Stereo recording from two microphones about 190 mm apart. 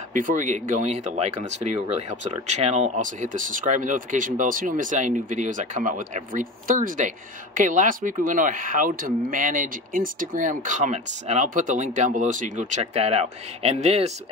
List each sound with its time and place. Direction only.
0.1 s speech: 45° right (ahead or behind)